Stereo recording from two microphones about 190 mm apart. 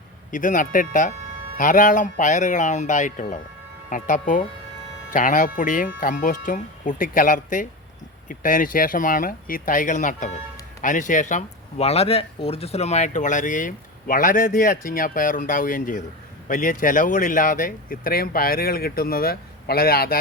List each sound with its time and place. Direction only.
0.3 s speech: 45° left (ahead or behind)